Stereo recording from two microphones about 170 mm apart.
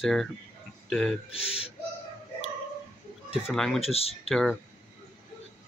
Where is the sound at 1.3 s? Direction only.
35° left (ahead or behind).